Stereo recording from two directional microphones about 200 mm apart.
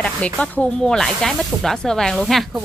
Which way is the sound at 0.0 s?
5° left (ahead or behind).